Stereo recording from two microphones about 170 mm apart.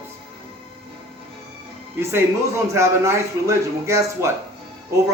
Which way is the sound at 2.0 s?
15° right (ahead or behind).